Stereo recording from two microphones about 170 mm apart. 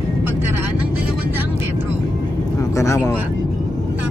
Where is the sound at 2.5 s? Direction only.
15° left (ahead or behind).